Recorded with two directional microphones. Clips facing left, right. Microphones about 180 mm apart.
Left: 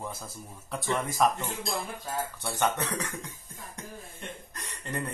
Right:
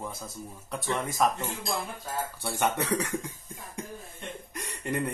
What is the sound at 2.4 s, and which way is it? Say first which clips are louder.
Speech: right 1 dB; 10° right (ahead or behind).